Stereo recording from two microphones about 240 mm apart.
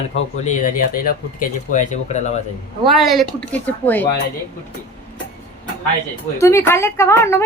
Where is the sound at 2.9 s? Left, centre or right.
Centre.